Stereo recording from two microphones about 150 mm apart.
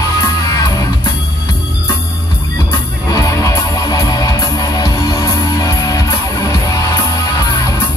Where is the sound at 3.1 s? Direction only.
20° left (ahead or behind).